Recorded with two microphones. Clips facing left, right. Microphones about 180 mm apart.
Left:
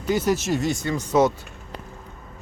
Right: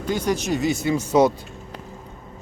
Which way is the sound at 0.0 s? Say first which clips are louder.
Left 1 dB; 5° left (ahead or behind).